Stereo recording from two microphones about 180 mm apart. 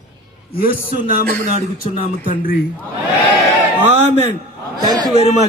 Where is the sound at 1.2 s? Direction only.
50° right (ahead or behind).